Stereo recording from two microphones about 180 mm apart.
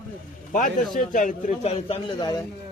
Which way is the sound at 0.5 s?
50° left (ahead or behind).